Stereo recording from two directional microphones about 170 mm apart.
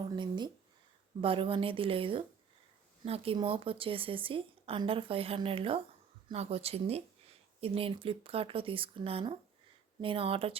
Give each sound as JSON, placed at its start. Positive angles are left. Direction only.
{"t": 0.2, "sound": "speech", "side_deg": -25}